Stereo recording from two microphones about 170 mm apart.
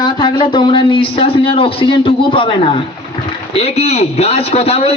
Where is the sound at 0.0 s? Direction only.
25° left (ahead or behind).